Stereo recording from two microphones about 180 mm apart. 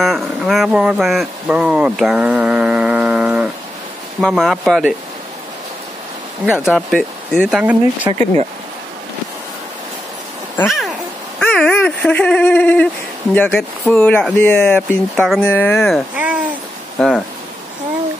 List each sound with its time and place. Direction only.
0.0 s speech: centre (ahead or behind)
6.5 s speech: centre (ahead or behind)
8.1 s speech: 20° right (ahead or behind)
11.3 s speech: 5° left (ahead or behind)
16.2 s a sound: 10° right (ahead or behind)
17.0 s speech: 5° left (ahead or behind)